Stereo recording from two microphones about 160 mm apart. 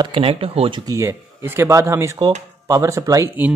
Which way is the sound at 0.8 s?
20° right (ahead or behind).